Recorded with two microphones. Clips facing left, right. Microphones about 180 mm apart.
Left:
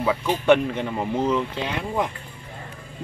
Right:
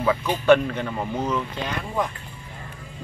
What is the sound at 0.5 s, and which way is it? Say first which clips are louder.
Speech: right 1 dB; 15° left (ahead or behind).